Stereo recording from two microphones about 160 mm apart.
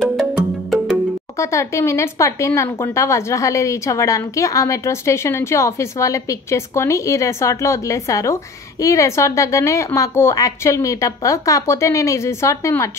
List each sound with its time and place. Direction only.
0.0 s music: centre (ahead or behind)
1.4 s a woman's voice: 20° left (ahead or behind)